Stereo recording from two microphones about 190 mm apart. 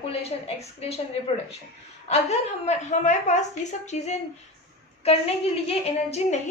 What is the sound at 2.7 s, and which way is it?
A woman's voice, 40° left (ahead or behind).